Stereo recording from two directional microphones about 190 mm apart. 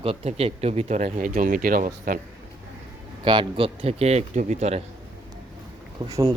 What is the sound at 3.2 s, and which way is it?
Speech, 25° right (ahead or behind).